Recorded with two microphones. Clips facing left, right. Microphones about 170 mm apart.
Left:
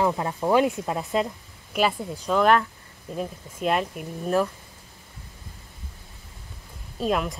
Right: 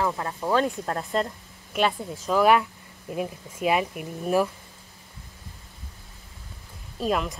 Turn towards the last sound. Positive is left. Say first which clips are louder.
# left 1 dB
turn(degrees=0)  # may be behind; listen again after turning